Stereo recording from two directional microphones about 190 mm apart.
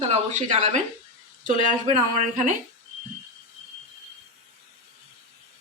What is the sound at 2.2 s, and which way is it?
Speech, 40° right (ahead or behind).